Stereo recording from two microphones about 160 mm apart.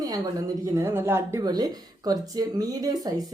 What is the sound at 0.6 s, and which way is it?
A woman's voice, 15° right (ahead or behind).